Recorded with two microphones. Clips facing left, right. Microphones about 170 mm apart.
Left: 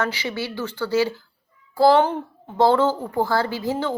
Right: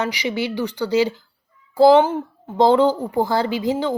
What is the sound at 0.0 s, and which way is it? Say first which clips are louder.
Speech: right 3 dB; 15° right (ahead or behind).